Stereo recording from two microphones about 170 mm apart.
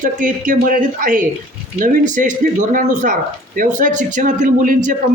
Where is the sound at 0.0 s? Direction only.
50° right (ahead or behind).